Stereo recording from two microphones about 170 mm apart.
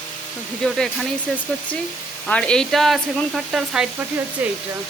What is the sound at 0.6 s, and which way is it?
Speech, 5° left (ahead or behind).